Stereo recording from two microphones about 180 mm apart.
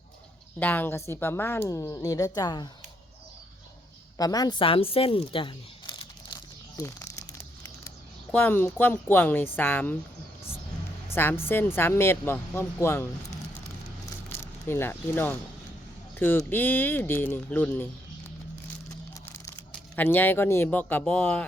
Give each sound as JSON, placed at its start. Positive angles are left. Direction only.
{"t": 0.6, "sound": "a woman's voice", "side_deg": 10}
{"t": 4.2, "sound": "speech", "side_deg": 20}
{"t": 6.3, "sound": "crumpling", "side_deg": 20}
{"t": 8.3, "sound": "a woman's voice", "side_deg": 10}
{"t": 11.1, "sound": "a woman's voice", "side_deg": 10}
{"t": 14.3, "sound": "a woman's voice", "side_deg": 15}
{"t": 20.0, "sound": "a woman's voice", "side_deg": 10}